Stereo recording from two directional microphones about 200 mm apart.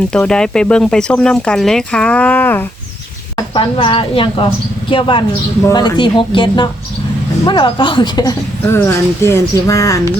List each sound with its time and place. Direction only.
0.1 s speech: 5° left (ahead or behind)
3.3 s a woman's voice: 25° left (ahead or behind)